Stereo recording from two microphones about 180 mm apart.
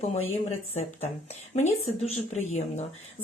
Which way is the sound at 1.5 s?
40° left (ahead or behind).